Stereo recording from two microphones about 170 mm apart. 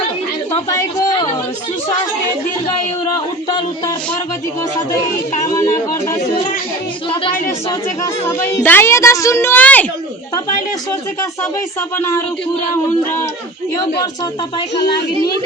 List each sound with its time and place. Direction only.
0.7 s a sound: 20° left (ahead or behind)
7.7 s a woman's voice: 20° left (ahead or behind)
11.9 s a woman's voice: 15° left (ahead or behind)
13.7 s speech: 25° left (ahead or behind)